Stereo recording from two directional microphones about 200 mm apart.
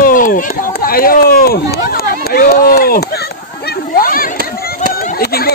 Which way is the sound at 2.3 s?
50° left (ahead or behind).